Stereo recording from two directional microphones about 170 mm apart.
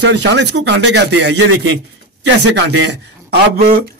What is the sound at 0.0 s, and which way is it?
A man's voice, 90° right.